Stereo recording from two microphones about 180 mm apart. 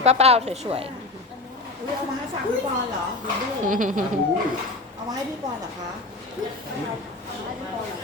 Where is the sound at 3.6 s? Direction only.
45° right (ahead or behind).